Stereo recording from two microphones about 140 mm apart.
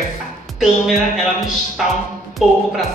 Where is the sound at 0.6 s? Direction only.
Centre (ahead or behind).